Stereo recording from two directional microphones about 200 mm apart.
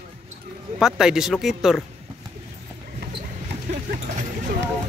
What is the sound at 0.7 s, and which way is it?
Speech, 5° right (ahead or behind).